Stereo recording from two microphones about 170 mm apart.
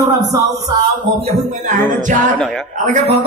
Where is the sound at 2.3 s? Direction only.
5° left (ahead or behind).